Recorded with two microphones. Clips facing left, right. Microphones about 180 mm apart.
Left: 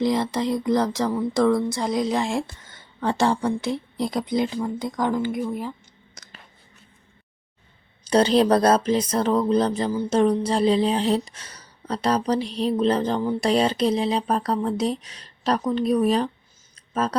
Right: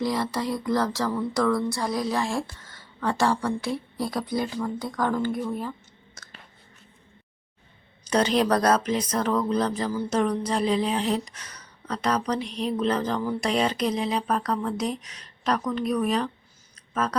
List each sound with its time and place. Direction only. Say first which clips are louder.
0.0 s speech: left 4 dB; 20° left (ahead or behind)
6.2 s a sound: left 1 dB; 15° left (ahead or behind)
8.0 s speech: left 4 dB; 30° left (ahead or behind)